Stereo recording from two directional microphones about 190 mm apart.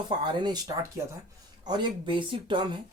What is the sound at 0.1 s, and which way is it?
Speech, 20° right (ahead or behind).